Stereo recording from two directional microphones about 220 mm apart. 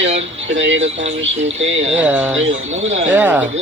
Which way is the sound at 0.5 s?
55° right (ahead or behind).